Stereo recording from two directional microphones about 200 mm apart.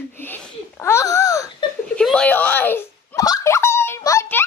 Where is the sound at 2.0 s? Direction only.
5° left (ahead or behind).